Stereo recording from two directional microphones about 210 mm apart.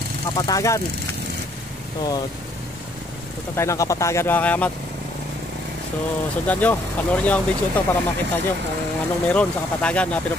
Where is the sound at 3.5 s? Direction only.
15° left (ahead or behind).